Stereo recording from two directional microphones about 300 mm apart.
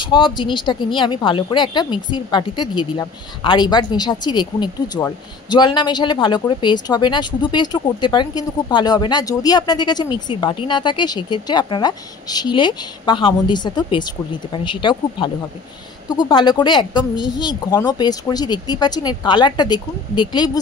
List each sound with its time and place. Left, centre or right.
0.0 s a woman's voice: centre